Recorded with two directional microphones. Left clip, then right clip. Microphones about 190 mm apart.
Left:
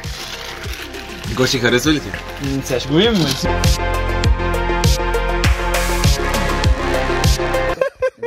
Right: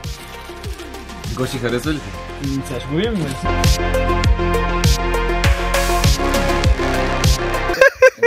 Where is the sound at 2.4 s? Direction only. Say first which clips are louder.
Left 5 dB; centre (ahead or behind).